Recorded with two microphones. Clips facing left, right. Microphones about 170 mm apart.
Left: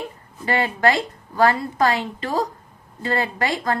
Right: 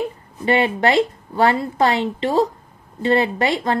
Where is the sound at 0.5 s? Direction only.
20° right (ahead or behind).